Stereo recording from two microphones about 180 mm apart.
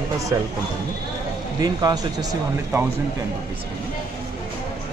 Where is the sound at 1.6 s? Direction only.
20° right (ahead or behind).